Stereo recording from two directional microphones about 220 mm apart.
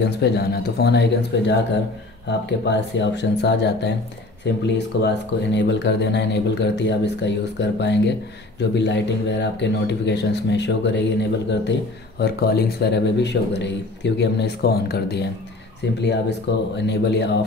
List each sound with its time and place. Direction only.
0.0 s speech: 50° left (ahead or behind)
12.2 s speech: 45° left (ahead or behind)